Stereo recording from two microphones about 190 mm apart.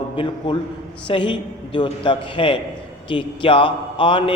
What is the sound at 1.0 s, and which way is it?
A man's voice, 25° left (ahead or behind).